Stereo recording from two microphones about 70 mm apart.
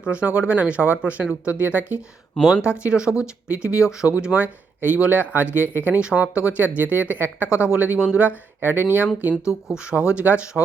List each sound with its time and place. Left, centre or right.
0.0 s speech: centre
6.0 s speech: centre
8.6 s speech: right
9.4 s speech: centre